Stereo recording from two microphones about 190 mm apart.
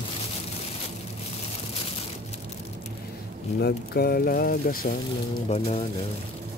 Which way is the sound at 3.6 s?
55° left (ahead or behind).